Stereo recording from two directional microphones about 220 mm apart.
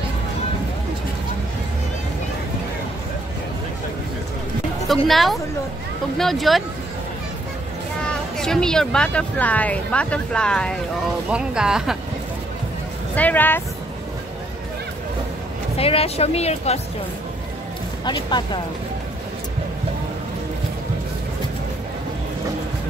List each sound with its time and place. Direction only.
4.8 s a woman's voice: centre (ahead or behind)
8.1 s speech: 5° left (ahead or behind)
13.1 s speech: 5° left (ahead or behind)
15.8 s speech: 25° left (ahead or behind)
18.0 s speech: 20° left (ahead or behind)